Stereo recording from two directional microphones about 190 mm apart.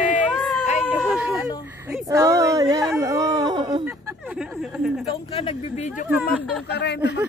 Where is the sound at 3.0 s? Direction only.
15° right (ahead or behind).